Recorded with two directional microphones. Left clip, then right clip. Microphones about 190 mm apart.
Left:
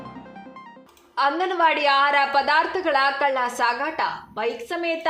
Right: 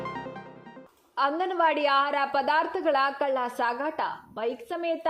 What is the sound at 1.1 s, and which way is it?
A woman's voice, 35° right (ahead or behind).